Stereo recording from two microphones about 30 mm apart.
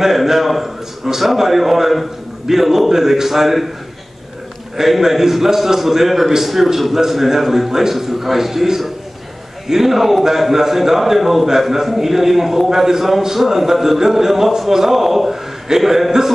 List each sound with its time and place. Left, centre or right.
0.0 s a man's voice: centre
4.7 s a man's voice: centre